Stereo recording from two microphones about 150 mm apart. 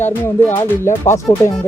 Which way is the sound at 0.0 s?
15° left (ahead or behind).